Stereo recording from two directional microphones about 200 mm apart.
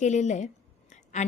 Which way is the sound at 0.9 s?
35° left (ahead or behind).